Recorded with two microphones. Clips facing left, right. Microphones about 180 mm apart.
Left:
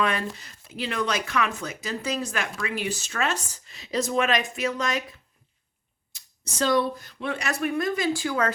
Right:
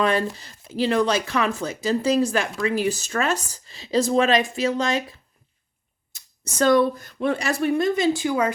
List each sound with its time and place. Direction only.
0.0 s speech: 35° right (ahead or behind)
6.1 s speech: 50° right (ahead or behind)
7.3 s a woman's voice: 30° right (ahead or behind); by 8.5 s 15° right (ahead or behind)